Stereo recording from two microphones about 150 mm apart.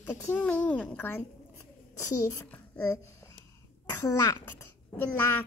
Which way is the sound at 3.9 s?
20° left (ahead or behind).